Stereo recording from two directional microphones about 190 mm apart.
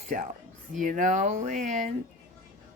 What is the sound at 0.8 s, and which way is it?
Music, 45° right (ahead or behind).